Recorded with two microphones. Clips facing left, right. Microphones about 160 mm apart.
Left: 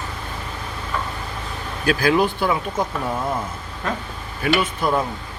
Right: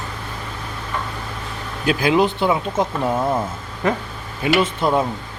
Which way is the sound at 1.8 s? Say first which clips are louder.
Right 1 dB; 20° right (ahead or behind).